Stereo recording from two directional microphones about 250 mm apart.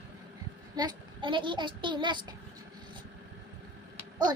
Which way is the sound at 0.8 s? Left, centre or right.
Centre.